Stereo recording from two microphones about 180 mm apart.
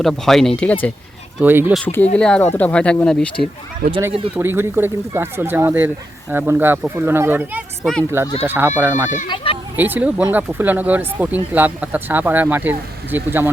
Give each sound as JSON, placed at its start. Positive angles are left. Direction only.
{"t": 0.0, "sound": "speech", "side_deg": 0}
{"t": 1.4, "sound": "speech", "side_deg": -10}
{"t": 1.7, "sound": "speech", "side_deg": 10}
{"t": 3.8, "sound": "speech", "side_deg": -60}
{"t": 4.4, "sound": "speech", "side_deg": -10}
{"t": 9.3, "sound": "children playing", "side_deg": 30}
{"t": 9.7, "sound": "speech", "side_deg": -10}